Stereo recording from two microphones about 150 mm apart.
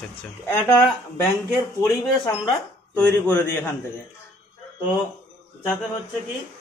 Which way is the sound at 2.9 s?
10° left (ahead or behind).